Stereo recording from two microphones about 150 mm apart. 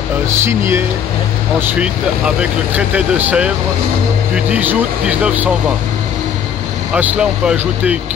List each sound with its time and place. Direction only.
0.3 s speech: 15° right (ahead or behind)
1.7 s speech: 10° right (ahead or behind)
6.9 s speech: 10° right (ahead or behind)